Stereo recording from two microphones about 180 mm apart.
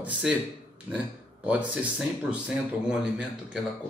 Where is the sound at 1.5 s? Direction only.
5° right (ahead or behind).